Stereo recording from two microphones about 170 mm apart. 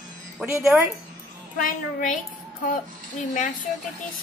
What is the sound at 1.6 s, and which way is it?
Speech, 50° left (ahead or behind).